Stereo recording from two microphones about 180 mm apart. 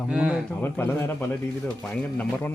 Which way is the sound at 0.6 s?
10° left (ahead or behind).